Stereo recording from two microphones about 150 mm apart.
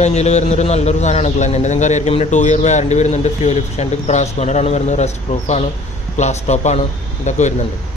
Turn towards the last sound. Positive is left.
turn(degrees=50)  # may be behind; listen again after turning